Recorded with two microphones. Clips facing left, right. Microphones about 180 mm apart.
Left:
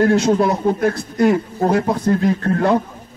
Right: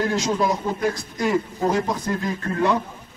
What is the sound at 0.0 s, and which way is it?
A man's voice, 60° left (ahead or behind).